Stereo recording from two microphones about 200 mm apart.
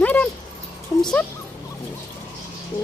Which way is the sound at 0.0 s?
10° left (ahead or behind).